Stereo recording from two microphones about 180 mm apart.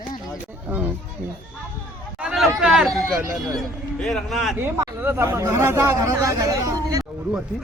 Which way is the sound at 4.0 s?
5° left (ahead or behind).